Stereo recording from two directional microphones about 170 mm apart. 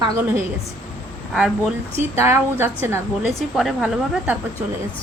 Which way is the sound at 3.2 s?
Centre (ahead or behind).